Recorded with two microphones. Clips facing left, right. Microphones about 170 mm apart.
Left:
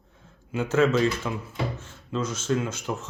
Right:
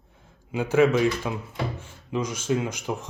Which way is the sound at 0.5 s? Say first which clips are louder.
Right 2 dB; 10° right (ahead or behind).